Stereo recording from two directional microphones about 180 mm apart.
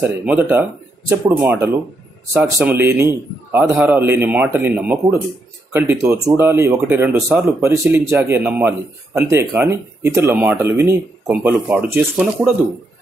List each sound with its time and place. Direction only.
0.0 s speech: 10° right (ahead or behind)